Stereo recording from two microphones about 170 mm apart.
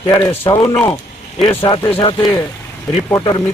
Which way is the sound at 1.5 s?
30° left (ahead or behind).